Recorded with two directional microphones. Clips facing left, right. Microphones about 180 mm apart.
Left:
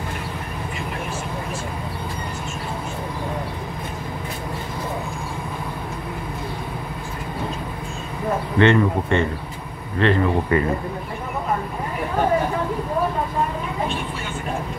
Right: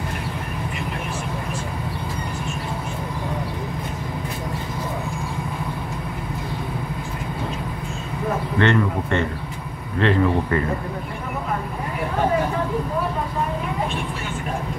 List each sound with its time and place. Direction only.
8.5 s speech: 15° left (ahead or behind)
9.9 s speech: centre (ahead or behind)
10.5 s speech: 15° left (ahead or behind)